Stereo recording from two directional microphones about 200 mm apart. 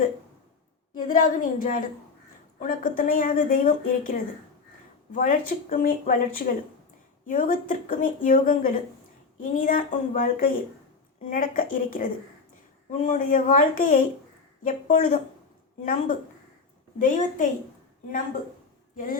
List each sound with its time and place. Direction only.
1.0 s a woman's voice: 40° left (ahead or behind)
17.0 s a woman's voice: 40° left (ahead or behind)
18.9 s a woman's voice: 45° left (ahead or behind)